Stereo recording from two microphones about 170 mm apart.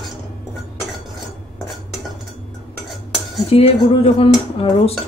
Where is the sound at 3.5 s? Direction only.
35° left (ahead or behind).